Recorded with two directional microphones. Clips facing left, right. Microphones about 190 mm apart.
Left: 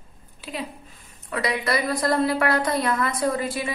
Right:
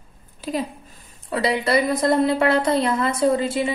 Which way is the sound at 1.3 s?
30° right (ahead or behind).